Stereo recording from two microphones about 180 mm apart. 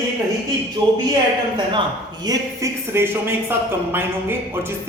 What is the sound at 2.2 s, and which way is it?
Speech, 15° right (ahead or behind).